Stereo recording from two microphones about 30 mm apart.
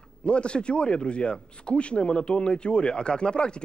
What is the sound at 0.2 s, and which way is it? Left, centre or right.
Speech, left.